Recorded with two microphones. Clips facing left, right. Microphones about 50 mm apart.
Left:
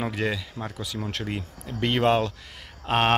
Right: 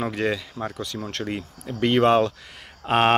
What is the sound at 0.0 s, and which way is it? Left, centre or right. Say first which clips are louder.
Speech: right 3 dB; centre.